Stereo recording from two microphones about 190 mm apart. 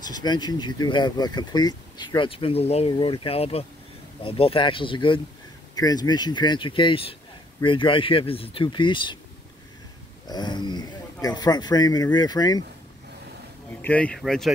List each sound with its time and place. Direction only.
0.0 s speech: 20° left (ahead or behind)
10.2 s speech: 20° left (ahead or behind)
13.7 s speech: 10° left (ahead or behind)